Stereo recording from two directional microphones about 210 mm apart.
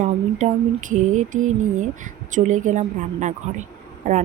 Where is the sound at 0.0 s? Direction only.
35° right (ahead or behind).